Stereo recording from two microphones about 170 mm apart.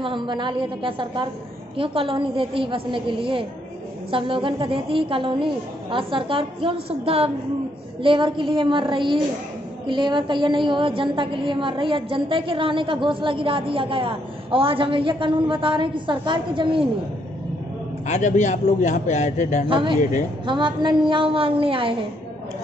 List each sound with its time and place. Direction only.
0.0 s a woman's voice: 30° right (ahead or behind)
18.0 s a man's voice: 45° left (ahead or behind)
19.7 s a woman's voice: 30° right (ahead or behind)
20.0 s a man's voice: 45° left (ahead or behind)
20.4 s a woman's voice: 25° right (ahead or behind)